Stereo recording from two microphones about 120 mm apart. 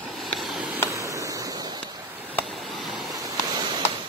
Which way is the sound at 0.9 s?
25° right (ahead or behind).